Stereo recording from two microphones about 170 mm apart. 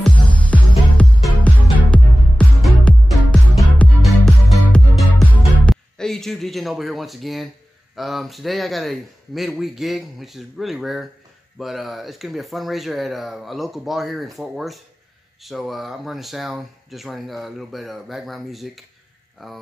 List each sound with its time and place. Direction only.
0.0 s music: 5° left (ahead or behind)
7.9 s speech: centre (ahead or behind)